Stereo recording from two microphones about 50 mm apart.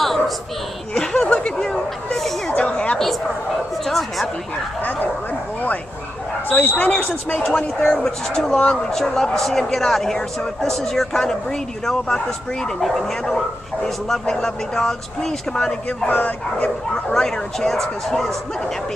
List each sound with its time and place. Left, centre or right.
1.2 s speech: left
2.1 s chatter: centre
2.5 s a sound: left
3.8 s speech: centre
6.5 s speech: left
7.4 s speech: centre
16.1 s speech: left
16.9 s speech: centre